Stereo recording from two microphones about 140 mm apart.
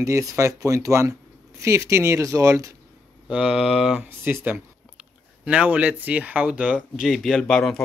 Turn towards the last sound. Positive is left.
turn(degrees=5)  # may be behind; listen again after turning